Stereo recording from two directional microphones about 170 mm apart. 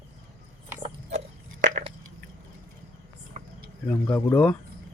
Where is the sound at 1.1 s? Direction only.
45° right (ahead or behind).